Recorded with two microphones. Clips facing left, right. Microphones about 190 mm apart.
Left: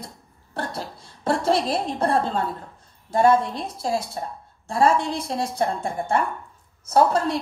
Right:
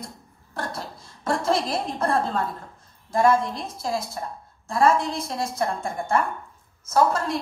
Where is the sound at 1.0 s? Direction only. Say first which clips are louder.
Left 2 dB; 30° left (ahead or behind).